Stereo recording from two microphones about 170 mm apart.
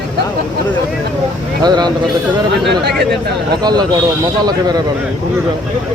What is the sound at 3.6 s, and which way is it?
Speech, 25° right (ahead or behind).